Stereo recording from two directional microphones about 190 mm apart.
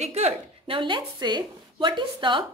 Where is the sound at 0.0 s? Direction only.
35° right (ahead or behind).